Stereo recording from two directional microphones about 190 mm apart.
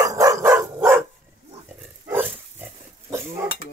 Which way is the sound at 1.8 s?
10° right (ahead or behind).